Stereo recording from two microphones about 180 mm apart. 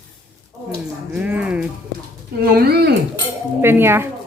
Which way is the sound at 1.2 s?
5° right (ahead or behind).